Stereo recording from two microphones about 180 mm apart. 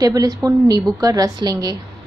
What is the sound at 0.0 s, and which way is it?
A woman's voice, 20° right (ahead or behind).